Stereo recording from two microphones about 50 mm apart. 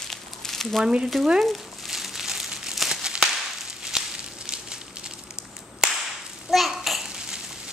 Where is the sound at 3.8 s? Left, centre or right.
Centre.